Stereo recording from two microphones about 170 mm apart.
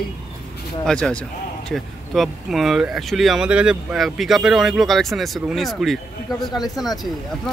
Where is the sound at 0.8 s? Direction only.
5° left (ahead or behind).